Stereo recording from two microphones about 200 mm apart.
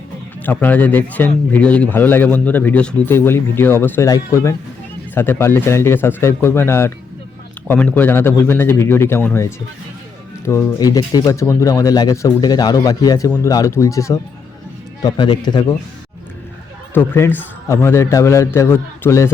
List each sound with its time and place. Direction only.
0.4 s speech: 10° left (ahead or behind)
16.9 s speech: 10° left (ahead or behind)